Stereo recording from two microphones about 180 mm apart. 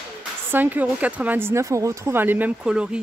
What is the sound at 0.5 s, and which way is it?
Speech, 10° right (ahead or behind).